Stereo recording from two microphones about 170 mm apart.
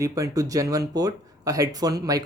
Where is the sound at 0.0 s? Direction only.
20° right (ahead or behind).